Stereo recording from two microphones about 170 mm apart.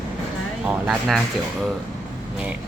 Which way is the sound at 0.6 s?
Centre (ahead or behind).